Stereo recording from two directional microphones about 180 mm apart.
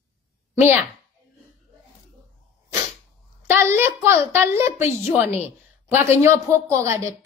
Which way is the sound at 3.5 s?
15° right (ahead or behind).